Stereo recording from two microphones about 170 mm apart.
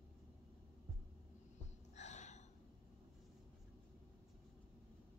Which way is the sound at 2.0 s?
45° left (ahead or behind).